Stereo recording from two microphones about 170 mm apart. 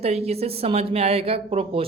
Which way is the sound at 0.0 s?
40° right (ahead or behind).